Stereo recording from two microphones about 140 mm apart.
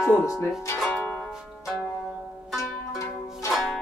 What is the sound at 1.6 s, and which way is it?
Music, 5° right (ahead or behind).